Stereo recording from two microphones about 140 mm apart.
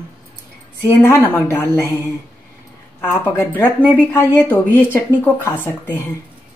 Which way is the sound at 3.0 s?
15° left (ahead or behind).